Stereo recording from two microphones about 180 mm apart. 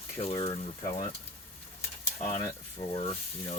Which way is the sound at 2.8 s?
20° left (ahead or behind).